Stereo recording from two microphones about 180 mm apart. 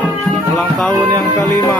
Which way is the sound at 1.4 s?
5° left (ahead or behind).